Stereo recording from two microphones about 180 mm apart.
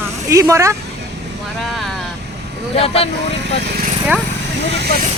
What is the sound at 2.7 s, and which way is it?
Speech, 35° left (ahead or behind).